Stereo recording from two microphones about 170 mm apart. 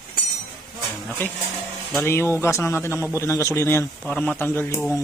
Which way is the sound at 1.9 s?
10° left (ahead or behind).